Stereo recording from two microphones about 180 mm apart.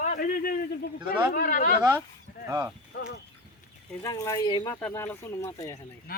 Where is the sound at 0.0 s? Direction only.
45° left (ahead or behind).